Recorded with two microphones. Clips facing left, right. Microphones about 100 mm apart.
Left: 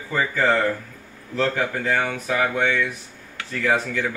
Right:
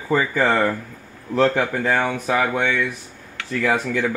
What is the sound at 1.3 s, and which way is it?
Speech, 50° right (ahead or behind).